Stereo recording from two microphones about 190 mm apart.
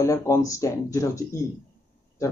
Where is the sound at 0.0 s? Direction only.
15° left (ahead or behind).